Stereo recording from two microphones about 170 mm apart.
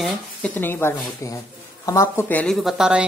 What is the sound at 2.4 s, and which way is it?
Speech, centre (ahead or behind).